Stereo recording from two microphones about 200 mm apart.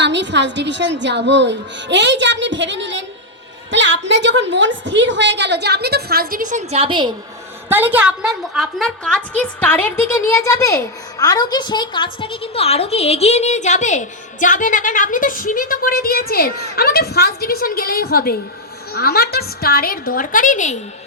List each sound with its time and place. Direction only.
0.0 s a woman's voice: 60° right (ahead or behind); by 7.1 s 25° right (ahead or behind)
7.7 s a woman's voice: 10° right (ahead or behind); by 20.7 s 40° left (ahead or behind)